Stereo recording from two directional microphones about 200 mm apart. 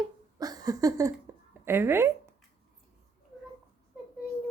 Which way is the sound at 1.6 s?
10° right (ahead or behind).